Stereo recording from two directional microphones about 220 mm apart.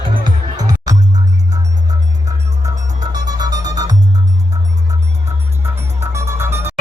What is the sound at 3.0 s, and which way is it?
Music, 15° right (ahead or behind).